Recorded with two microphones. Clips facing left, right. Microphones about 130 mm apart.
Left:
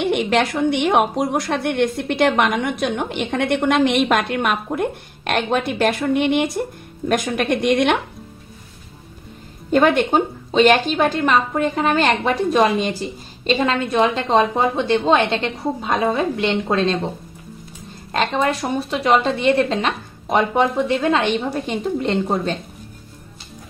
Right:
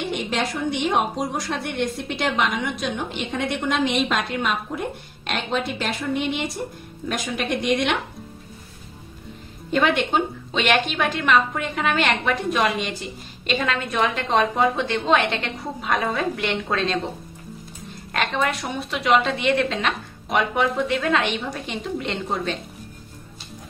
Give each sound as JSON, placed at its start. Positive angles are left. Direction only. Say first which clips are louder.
{"t": 0.0, "sound": "a woman's voice", "louder": "left 7 dB", "side_deg": 65}
{"t": 9.7, "sound": "a woman's voice", "louder": "left 5 dB", "side_deg": 45}
{"t": 18.1, "sound": "a woman's voice", "louder": "left 4 dB", "side_deg": 30}